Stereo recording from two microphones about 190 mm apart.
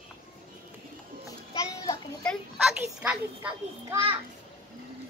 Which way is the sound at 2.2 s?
Centre (ahead or behind).